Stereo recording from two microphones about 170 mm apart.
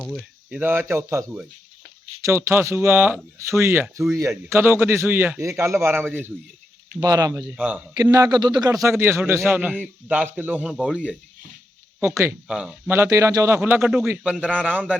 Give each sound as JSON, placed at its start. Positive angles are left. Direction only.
{"t": 0.0, "sound": "speech", "side_deg": 5}
{"t": 0.5, "sound": "a man's voice", "side_deg": -10}
{"t": 7.5, "sound": "a man's voice", "side_deg": -5}
{"t": 8.0, "sound": "a man's voice", "side_deg": -20}
{"t": 12.9, "sound": "a man's voice", "side_deg": -15}